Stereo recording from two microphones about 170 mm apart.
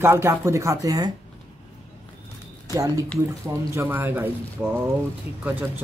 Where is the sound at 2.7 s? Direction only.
20° right (ahead or behind).